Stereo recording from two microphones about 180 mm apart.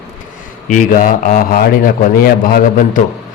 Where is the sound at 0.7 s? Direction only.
45° left (ahead or behind).